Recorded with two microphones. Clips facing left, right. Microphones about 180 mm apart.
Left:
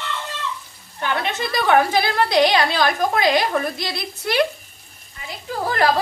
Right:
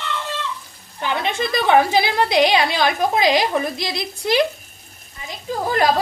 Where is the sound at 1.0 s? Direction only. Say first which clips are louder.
Right 1 dB; 15° right (ahead or behind).